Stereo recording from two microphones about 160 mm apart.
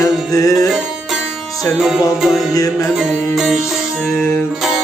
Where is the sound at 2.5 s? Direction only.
20° left (ahead or behind).